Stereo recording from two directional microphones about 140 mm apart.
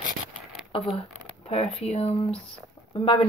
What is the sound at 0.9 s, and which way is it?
Speech, 45° left (ahead or behind).